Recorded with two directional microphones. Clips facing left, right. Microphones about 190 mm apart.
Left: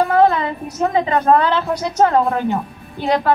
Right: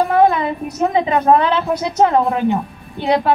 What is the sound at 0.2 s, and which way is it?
Music, 15° right (ahead or behind).